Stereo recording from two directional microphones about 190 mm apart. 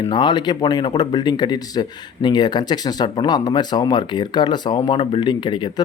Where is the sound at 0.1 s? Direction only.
25° left (ahead or behind).